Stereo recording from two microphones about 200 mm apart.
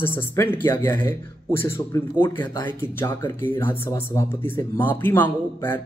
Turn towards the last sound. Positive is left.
turn(degrees=10)  # may be behind; listen again after turning